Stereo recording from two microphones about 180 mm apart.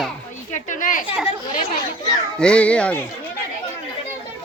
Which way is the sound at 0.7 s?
45° left (ahead or behind).